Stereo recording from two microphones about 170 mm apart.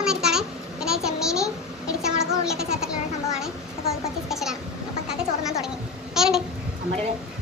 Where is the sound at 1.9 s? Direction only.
5° right (ahead or behind).